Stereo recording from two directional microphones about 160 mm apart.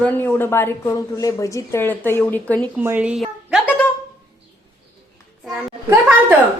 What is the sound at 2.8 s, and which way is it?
Speech, 10° right (ahead or behind).